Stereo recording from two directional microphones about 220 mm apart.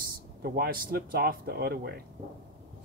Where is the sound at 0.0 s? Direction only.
45° right (ahead or behind).